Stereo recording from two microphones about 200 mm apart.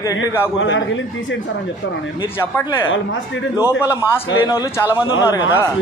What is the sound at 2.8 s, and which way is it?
Speech, 75° left (ahead or behind).